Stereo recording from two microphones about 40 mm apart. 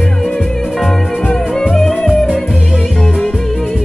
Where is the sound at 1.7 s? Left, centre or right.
Centre.